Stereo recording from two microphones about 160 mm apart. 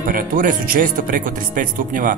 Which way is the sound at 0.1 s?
55° right (ahead or behind).